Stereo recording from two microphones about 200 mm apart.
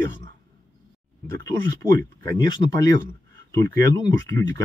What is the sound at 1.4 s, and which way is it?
Speech, 15° left (ahead or behind).